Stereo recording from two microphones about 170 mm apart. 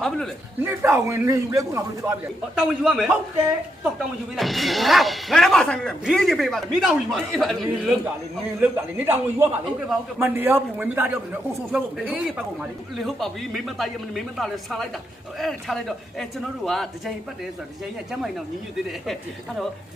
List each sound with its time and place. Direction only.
0.6 s a man's voice: 10° right (ahead or behind)
2.6 s speech: centre (ahead or behind)
4.4 s a man's voice: centre (ahead or behind)